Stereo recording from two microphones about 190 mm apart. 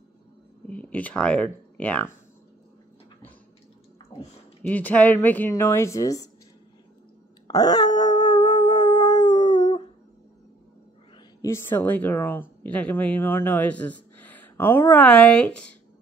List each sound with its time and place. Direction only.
0.7 s a woman's voice: 5° left (ahead or behind)
4.6 s a woman's voice: 10° left (ahead or behind)
7.4 s howl: 20° left (ahead or behind)
11.4 s a woman's voice: 10° left (ahead or behind)